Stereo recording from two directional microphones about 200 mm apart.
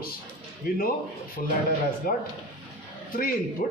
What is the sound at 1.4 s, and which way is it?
Speech, 40° left (ahead or behind).